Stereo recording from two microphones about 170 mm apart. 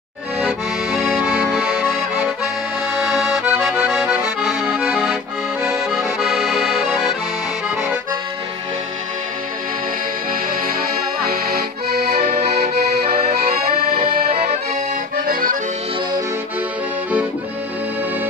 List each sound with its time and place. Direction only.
0.4 s accordion: 5° right (ahead or behind)
11.2 s accordion: 65° right (ahead or behind)
12.4 s accordion: 40° right (ahead or behind)
13.1 s accordion: 65° right (ahead or behind)
13.4 s accordion: 40° right (ahead or behind)
15.1 s accordion: 55° right (ahead or behind)